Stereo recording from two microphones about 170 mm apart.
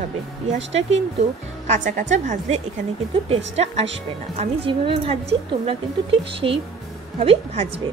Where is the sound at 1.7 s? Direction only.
45° right (ahead or behind).